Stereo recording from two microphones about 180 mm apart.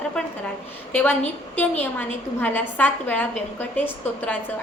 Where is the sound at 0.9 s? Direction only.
10° left (ahead or behind).